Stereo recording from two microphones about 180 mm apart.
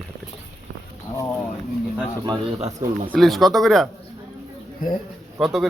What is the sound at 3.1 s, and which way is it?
Speech, centre (ahead or behind).